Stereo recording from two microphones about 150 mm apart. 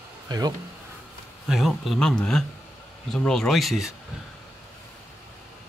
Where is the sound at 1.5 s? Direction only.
Centre (ahead or behind).